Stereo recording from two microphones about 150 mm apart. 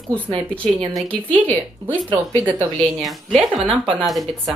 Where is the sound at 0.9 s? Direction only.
5° left (ahead or behind).